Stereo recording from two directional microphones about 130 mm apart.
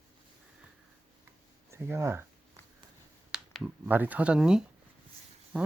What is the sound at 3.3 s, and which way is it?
Speech, 10° right (ahead or behind).